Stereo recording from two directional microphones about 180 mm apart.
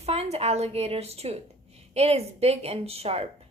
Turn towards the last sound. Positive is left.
turn(degrees=-35)  # may be behind; listen again after turning